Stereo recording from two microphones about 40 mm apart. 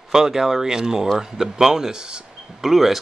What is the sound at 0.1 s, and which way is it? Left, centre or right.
Speech, centre.